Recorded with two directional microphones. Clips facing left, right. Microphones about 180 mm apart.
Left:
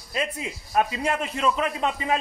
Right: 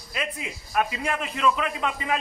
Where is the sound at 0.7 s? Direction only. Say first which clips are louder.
Left 2 dB; 30° left (ahead or behind).